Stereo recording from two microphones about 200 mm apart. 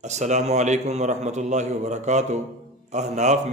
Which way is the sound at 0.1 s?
35° right (ahead or behind).